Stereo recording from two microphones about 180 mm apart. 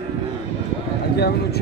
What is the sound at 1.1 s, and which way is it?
Speech, 65° left (ahead or behind).